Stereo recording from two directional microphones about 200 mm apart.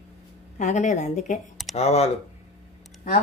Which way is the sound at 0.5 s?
35° left (ahead or behind).